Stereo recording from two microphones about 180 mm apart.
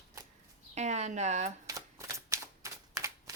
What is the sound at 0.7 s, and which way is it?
Speech, 40° right (ahead or behind).